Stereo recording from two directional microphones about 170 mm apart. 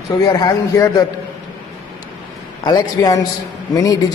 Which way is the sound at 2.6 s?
25° left (ahead or behind).